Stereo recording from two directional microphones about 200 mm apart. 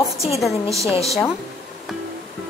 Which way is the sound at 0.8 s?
30° left (ahead or behind).